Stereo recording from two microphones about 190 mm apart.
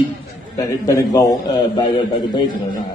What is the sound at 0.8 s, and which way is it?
A man's voice, 15° left (ahead or behind).